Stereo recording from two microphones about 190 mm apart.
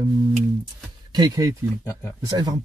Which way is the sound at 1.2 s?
20° right (ahead or behind).